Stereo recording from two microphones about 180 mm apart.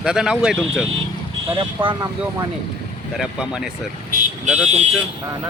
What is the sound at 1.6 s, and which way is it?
Speech, 25° right (ahead or behind).